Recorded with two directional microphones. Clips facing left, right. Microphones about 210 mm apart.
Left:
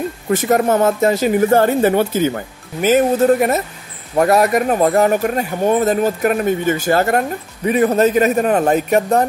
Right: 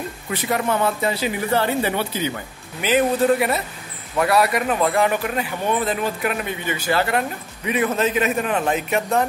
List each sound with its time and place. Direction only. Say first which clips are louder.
0.3 s speech: left 8 dB; 45° left (ahead or behind)